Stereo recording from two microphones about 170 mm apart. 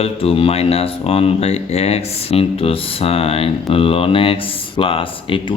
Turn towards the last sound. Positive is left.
turn(degrees=30)  # may be behind; listen again after turning